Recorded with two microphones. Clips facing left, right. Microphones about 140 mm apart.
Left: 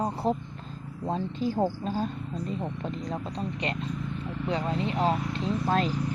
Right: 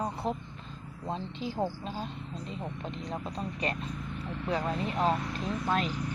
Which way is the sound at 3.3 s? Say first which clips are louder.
Left 2 dB; 25° left (ahead or behind).